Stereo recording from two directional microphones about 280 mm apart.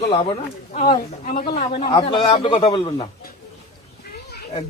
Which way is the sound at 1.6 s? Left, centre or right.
Centre.